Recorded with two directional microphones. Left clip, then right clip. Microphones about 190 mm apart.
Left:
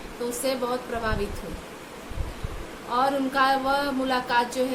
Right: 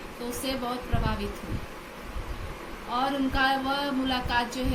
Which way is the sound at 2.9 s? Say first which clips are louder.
Left 4 dB; 20° left (ahead or behind).